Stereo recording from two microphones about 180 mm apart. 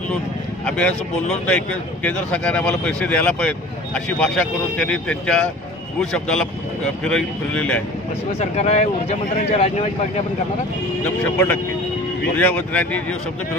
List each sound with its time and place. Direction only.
0.7 s a man's voice: 5° left (ahead or behind)
8.3 s speech: 35° left (ahead or behind)
12.4 s speech: 10° left (ahead or behind)